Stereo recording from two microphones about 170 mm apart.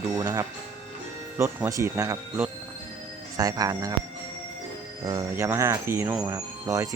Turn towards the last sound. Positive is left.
turn(degrees=-20)  # may be behind; listen again after turning